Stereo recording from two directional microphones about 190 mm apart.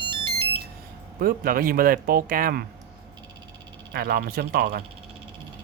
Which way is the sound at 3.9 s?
55° right (ahead or behind).